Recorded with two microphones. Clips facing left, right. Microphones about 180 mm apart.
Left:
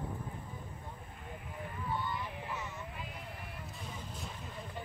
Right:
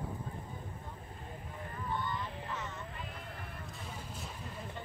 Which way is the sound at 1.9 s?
10° left (ahead or behind).